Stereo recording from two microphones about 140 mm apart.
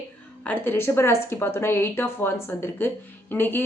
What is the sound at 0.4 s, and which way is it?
A woman's voice, 15° left (ahead or behind).